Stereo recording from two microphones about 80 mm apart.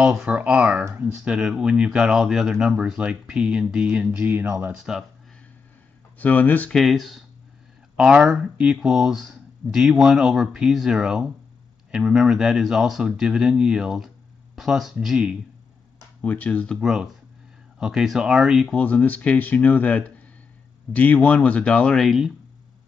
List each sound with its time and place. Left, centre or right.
0.0 s speech: centre
4.3 s speech: right
6.1 s speech: left
6.7 s speech: centre
16.2 s speech: centre
16.8 s speech: centre
18.7 s speech: centre
22.0 s speech: centre